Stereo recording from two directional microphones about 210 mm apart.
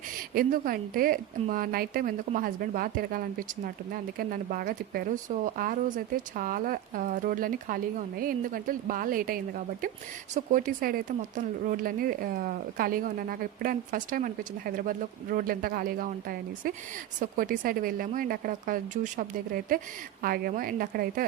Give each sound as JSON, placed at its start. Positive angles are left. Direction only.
{"t": 0.3, "sound": "a woman's voice", "side_deg": -45}